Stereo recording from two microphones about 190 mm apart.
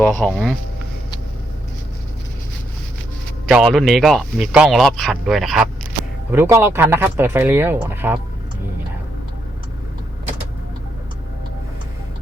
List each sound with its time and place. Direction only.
0.0 s speech: 5° left (ahead or behind)
3.4 s speech: 5° right (ahead or behind)
6.3 s speech: 10° right (ahead or behind)